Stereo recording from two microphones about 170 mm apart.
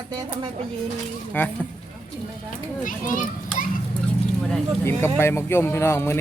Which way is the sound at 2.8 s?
50° left (ahead or behind).